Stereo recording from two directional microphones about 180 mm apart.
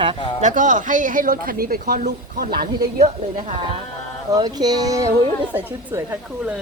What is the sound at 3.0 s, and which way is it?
Speech, 35° right (ahead or behind).